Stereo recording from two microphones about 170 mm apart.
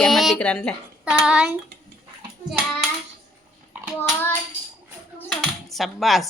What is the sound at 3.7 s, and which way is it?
Child singing, 10° right (ahead or behind).